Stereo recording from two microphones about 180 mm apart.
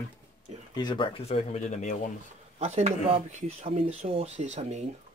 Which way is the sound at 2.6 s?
35° right (ahead or behind).